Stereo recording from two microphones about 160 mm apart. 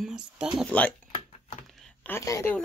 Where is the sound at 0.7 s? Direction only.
10° left (ahead or behind).